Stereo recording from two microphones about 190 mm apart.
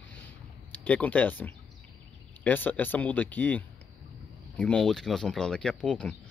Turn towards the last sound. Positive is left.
turn(degrees=5)  # may be behind; listen again after turning